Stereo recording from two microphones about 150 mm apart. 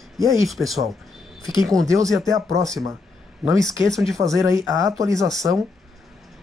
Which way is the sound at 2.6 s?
25° right (ahead or behind).